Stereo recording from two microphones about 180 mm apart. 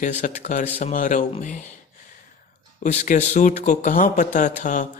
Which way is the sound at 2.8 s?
40° left (ahead or behind).